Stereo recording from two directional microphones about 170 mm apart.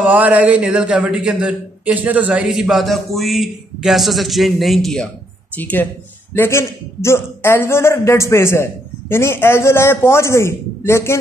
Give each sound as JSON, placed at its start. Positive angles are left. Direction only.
{"t": 0.0, "sound": "a man's voice", "side_deg": -10}